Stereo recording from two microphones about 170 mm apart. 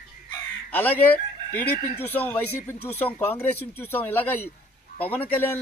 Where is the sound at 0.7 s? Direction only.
10° left (ahead or behind).